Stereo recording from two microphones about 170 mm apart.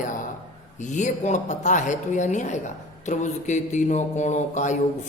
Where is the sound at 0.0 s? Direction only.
50° left (ahead or behind).